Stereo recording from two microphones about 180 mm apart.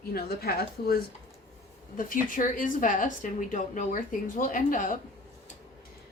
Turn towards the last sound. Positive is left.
turn(degrees=50)  # may be behind; listen again after turning